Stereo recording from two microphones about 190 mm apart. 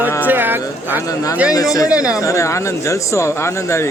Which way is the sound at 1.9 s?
5° right (ahead or behind).